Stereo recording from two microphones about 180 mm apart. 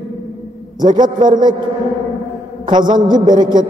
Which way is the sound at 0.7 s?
25° right (ahead or behind).